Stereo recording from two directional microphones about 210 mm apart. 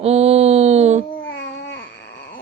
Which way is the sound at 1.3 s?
60° left (ahead or behind).